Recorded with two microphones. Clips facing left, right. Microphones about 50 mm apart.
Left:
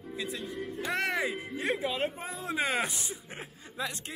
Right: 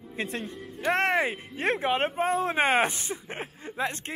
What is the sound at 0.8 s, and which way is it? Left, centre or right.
Speech, right.